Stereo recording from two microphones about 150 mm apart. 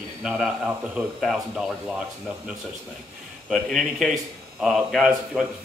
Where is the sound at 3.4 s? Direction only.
Centre (ahead or behind).